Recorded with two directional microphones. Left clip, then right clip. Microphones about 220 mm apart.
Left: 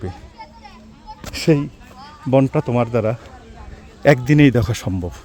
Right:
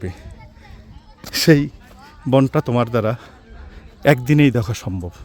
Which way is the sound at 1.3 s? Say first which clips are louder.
Right 3 dB; 40° right (ahead or behind).